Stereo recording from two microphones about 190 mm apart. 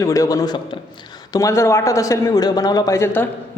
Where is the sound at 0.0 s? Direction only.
15° left (ahead or behind).